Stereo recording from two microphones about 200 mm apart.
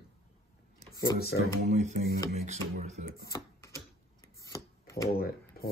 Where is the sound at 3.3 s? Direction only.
15° left (ahead or behind).